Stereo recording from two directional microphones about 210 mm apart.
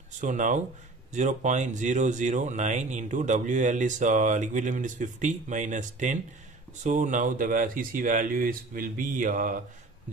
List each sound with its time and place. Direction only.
0.2 s speech: 35° right (ahead or behind)